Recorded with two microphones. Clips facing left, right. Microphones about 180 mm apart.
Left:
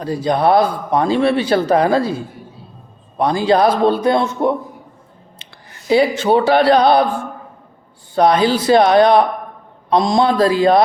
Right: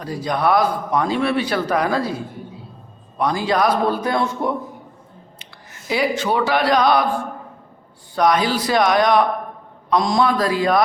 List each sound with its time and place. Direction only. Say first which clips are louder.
0.0 s a man's voice: left 5 dB; 25° left (ahead or behind)
5.9 s a man's voice: left 7 dB; 30° left (ahead or behind)
8.1 s a man's voice: left 4 dB; 30° left (ahead or behind)